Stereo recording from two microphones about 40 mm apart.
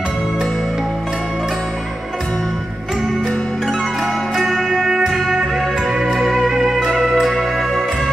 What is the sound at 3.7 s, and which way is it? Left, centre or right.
Music, centre.